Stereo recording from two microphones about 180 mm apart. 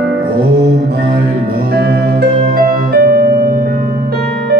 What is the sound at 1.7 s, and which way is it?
Music, 60° right (ahead or behind).